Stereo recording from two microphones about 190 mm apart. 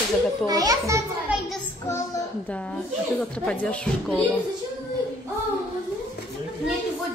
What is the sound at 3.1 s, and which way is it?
Speech, 5° left (ahead or behind).